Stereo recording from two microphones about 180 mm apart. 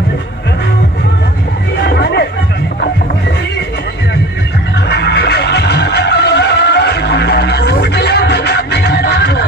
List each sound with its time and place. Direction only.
1.8 s music: 70° left (ahead or behind)
4.7 s music: 70° left (ahead or behind)